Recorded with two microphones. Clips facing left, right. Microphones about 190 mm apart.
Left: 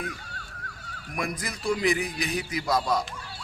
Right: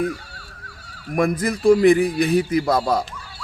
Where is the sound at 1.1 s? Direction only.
50° right (ahead or behind).